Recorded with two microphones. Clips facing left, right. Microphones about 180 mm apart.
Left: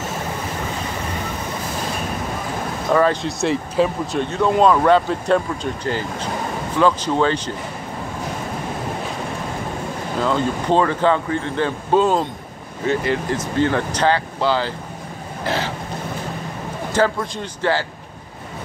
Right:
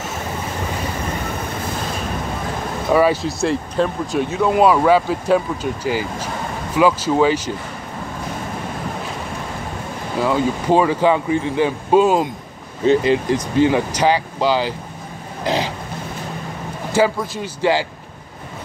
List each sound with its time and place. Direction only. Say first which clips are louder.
2.9 s speech: right 2 dB; 10° right (ahead or behind)
10.1 s speech: right 2 dB; 10° right (ahead or behind)
15.4 s vehicle: right 3 dB; 15° right (ahead or behind)
16.9 s speech: right 2 dB; 10° right (ahead or behind)